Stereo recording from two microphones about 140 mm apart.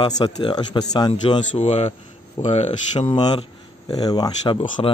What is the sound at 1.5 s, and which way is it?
Speech, 50° left (ahead or behind).